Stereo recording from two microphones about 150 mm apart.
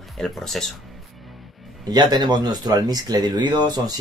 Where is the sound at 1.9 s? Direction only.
30° right (ahead or behind).